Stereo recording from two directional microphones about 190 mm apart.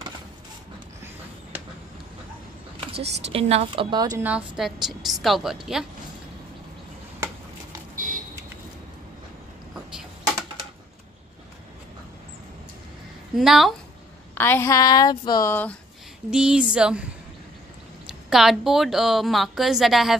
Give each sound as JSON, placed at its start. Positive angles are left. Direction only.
{"t": 3.3, "sound": "a woman's voice", "side_deg": -30}
{"t": 4.3, "sound": "a woman's voice", "side_deg": 0}
{"t": 7.9, "sound": "car alarm", "side_deg": -45}
{"t": 13.3, "sound": "a woman's voice", "side_deg": 0}
{"t": 14.3, "sound": "speech", "side_deg": 10}
{"t": 16.3, "sound": "a woman's voice", "side_deg": -5}
{"t": 18.3, "sound": "a woman's voice", "side_deg": 0}